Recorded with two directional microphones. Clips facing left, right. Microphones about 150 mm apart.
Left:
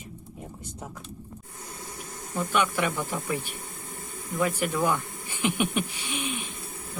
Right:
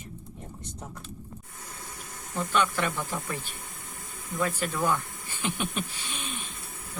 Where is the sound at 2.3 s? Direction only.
15° left (ahead or behind).